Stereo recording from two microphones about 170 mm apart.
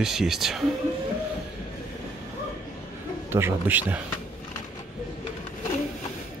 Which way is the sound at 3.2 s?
15° right (ahead or behind).